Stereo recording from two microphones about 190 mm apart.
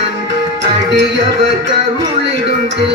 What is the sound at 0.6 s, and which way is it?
Music, 65° right (ahead or behind).